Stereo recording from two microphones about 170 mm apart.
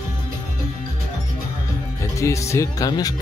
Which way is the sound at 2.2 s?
15° left (ahead or behind).